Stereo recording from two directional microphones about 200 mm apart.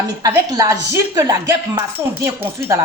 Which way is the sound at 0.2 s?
15° right (ahead or behind).